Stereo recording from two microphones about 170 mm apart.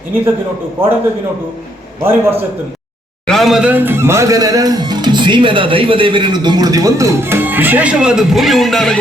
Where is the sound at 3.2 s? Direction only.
Centre (ahead or behind).